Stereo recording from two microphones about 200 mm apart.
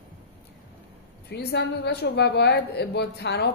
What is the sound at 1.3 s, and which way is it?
A woman's voice, 55° left (ahead or behind).